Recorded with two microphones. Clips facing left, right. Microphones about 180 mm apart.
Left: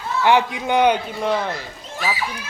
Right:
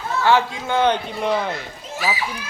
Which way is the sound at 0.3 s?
15° left (ahead or behind).